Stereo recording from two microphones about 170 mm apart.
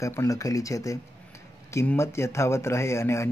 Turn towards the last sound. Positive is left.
turn(degrees=15)  # may be behind; listen again after turning